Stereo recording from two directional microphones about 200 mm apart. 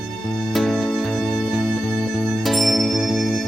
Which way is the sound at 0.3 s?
Centre (ahead or behind).